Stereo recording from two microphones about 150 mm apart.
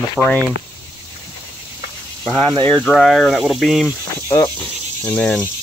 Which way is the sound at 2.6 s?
10° left (ahead or behind).